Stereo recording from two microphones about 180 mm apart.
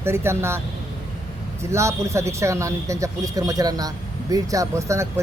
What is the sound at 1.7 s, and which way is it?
Speech, 15° right (ahead or behind).